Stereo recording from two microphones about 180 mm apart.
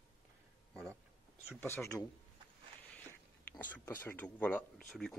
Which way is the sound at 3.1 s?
10° left (ahead or behind).